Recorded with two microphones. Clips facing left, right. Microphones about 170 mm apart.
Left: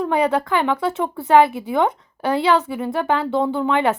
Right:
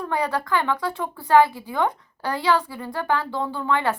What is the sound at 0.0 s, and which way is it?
Speech, 20° left (ahead or behind).